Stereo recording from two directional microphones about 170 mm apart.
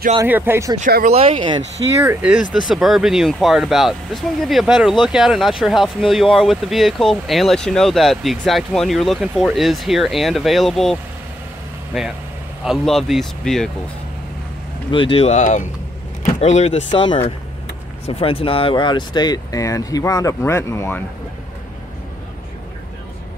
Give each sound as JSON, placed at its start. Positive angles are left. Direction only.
{"t": 0.2, "sound": "speech", "side_deg": -15}
{"t": 0.7, "sound": "speech", "side_deg": -50}
{"t": 1.1, "sound": "speech", "side_deg": -30}
{"t": 2.0, "sound": "speech", "side_deg": -5}
{"t": 12.6, "sound": "speech", "side_deg": 0}
{"t": 14.9, "sound": "speech", "side_deg": 30}